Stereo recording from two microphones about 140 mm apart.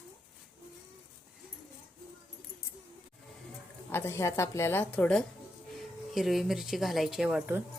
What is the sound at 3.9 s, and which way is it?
A woman's voice, 15° left (ahead or behind).